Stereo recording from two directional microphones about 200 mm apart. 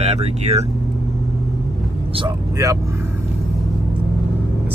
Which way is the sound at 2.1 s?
20° right (ahead or behind).